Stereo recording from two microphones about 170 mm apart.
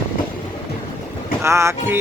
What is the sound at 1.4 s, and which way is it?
Speech, 15° right (ahead or behind).